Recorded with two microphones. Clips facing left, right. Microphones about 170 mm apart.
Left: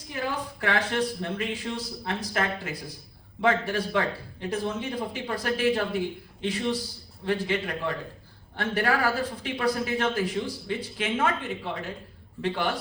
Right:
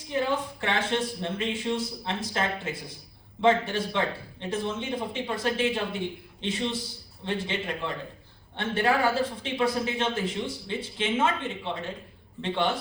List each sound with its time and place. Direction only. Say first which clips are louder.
0.1 s a woman's voice: right 4 dB; 25° right (ahead or behind)